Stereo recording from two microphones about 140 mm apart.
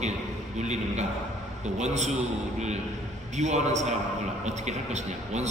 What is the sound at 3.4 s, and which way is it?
A man's voice, 55° right (ahead or behind).